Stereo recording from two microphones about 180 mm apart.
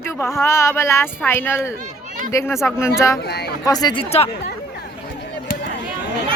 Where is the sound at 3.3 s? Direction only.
65° left (ahead or behind).